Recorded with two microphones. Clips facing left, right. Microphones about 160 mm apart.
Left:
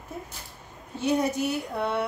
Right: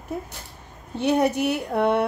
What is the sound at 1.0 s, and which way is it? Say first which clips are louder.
Speech: right 4 dB; 65° right (ahead or behind).